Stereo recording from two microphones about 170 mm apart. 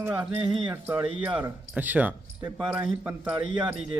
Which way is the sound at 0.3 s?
30° right (ahead or behind).